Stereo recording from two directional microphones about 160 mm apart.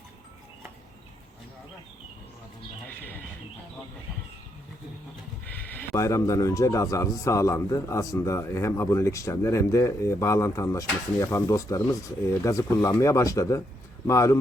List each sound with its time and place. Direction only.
2.8 s speech: 10° left (ahead or behind)
5.5 s speech: 10° left (ahead or behind)